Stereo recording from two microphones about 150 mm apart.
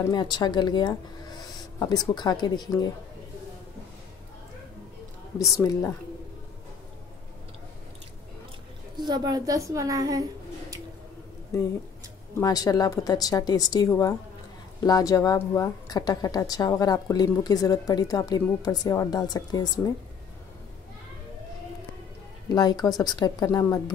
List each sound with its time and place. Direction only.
0.1 s a woman's voice: 30° left (ahead or behind)
5.4 s a woman's voice: 20° left (ahead or behind)
9.0 s a woman's voice: 25° right (ahead or behind)
12.4 s a woman's voice: 25° left (ahead or behind)
22.5 s a woman's voice: 25° left (ahead or behind)